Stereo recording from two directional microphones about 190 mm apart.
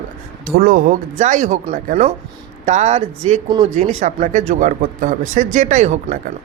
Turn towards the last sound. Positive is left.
turn(degrees=-35)  # may be behind; listen again after turning